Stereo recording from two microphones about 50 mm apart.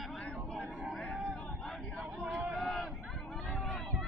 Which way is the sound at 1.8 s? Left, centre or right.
Centre.